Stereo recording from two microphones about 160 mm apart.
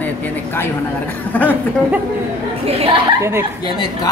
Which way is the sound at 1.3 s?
10° left (ahead or behind).